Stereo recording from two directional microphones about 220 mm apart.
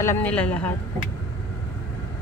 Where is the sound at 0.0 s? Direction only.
10° left (ahead or behind).